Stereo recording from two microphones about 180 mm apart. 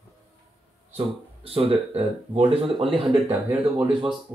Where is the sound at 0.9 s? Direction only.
30° right (ahead or behind).